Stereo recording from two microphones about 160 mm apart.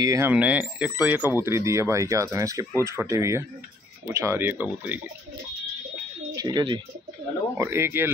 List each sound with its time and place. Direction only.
0.0 s speech: 20° right (ahead or behind)
0.3 s speech: 10° right (ahead or behind)
6.3 s speech: 25° right (ahead or behind)
7.5 s speech: 15° right (ahead or behind)